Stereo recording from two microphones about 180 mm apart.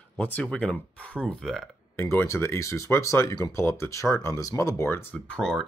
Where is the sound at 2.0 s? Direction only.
15° left (ahead or behind).